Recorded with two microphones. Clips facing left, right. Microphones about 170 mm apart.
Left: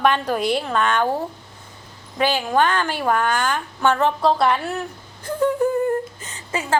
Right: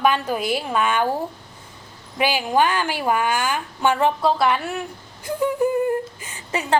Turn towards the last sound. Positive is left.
turn(degrees=-20)  # may be behind; listen again after turning